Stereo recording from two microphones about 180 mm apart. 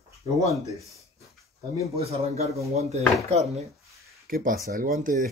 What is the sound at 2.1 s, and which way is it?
Speech, 35° right (ahead or behind).